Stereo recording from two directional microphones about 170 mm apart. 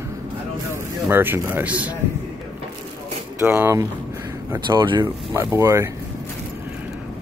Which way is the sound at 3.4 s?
10° right (ahead or behind).